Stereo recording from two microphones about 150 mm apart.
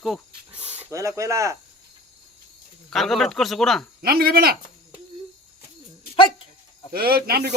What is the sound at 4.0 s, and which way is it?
Speech, 90° right.